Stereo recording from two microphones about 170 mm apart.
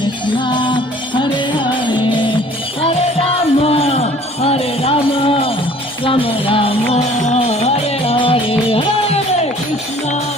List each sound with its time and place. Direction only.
0.3 s music: 25° left (ahead or behind)